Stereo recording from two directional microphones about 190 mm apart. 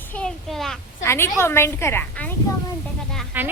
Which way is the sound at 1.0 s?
15° left (ahead or behind).